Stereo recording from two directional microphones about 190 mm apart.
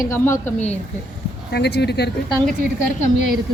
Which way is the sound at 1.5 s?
60° left (ahead or behind).